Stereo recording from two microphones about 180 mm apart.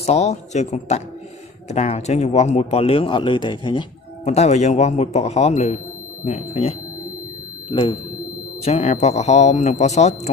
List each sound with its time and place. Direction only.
0.0 s speech: 35° left (ahead or behind)
4.2 s speech: 35° left (ahead or behind)
8.6 s speech: 40° left (ahead or behind)